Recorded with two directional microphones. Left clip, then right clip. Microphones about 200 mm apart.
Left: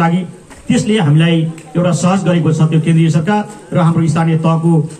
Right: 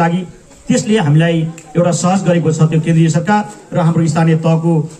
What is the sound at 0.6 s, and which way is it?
A man's voice, 30° right (ahead or behind).